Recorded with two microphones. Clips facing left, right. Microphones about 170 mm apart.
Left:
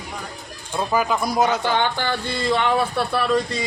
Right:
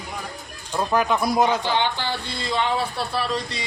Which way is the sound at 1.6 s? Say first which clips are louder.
Left 2 dB; 50° left (ahead or behind).